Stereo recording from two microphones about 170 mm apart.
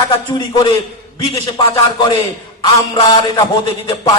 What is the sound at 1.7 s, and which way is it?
Speech, 25° left (ahead or behind).